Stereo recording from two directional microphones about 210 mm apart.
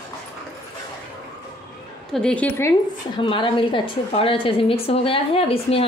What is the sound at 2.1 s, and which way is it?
Speech, 5° left (ahead or behind).